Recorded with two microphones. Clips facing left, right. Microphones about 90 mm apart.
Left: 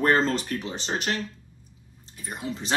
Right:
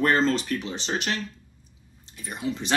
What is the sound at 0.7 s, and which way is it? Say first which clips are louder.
Speech: right 1 dB; 40° left (ahead or behind).